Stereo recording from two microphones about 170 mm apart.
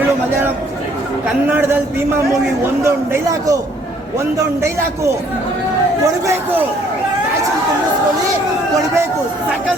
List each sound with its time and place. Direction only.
1.5 s a man's voice: 10° right (ahead or behind)
2.8 s a man's voice: 20° right (ahead or behind)
6.2 s a man's voice: 10° right (ahead or behind)